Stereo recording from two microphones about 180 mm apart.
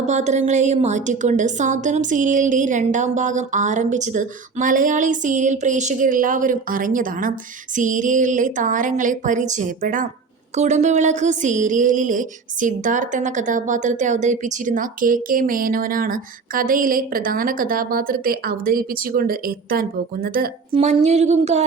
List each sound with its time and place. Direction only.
0.0 s a woman's voice: 40° right (ahead or behind)
20.7 s speech: 35° right (ahead or behind)